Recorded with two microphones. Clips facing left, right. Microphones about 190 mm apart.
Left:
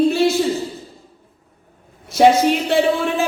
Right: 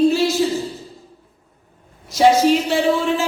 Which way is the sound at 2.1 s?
55° left (ahead or behind).